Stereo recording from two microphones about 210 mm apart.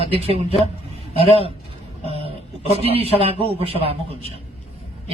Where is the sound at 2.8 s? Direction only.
30° right (ahead or behind).